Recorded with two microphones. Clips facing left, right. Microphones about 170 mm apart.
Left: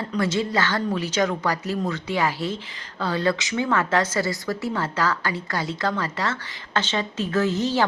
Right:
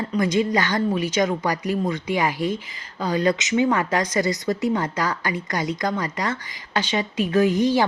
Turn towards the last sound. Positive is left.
turn(degrees=-15)  # may be behind; listen again after turning